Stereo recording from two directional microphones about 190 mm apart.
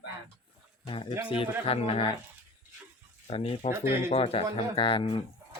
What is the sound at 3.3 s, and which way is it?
Speech, 35° left (ahead or behind).